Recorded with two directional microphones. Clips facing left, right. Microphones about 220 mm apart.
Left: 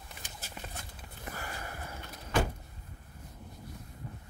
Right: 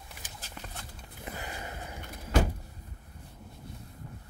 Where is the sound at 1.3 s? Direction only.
20° right (ahead or behind).